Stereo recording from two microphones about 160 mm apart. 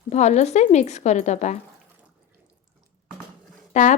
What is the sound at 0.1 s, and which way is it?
Speech, 45° left (ahead or behind).